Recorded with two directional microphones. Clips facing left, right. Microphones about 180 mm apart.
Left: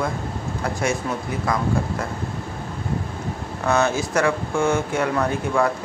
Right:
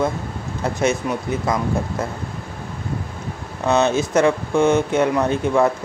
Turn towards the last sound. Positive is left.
turn(degrees=-20)  # may be behind; listen again after turning